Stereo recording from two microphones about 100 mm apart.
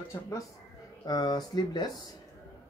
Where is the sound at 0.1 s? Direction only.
30° left (ahead or behind).